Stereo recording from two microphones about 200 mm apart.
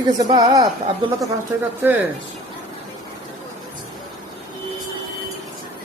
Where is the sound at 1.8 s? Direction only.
10° right (ahead or behind).